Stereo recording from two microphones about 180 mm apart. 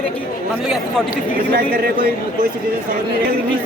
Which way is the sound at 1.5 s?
55° right (ahead or behind).